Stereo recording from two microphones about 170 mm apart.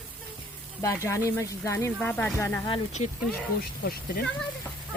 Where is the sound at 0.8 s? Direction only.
15° left (ahead or behind).